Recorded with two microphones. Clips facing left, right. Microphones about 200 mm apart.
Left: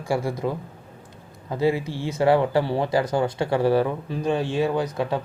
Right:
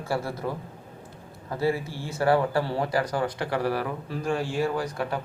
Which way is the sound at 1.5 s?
20° left (ahead or behind).